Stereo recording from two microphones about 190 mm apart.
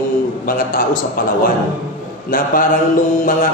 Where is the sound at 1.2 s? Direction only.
50° left (ahead or behind).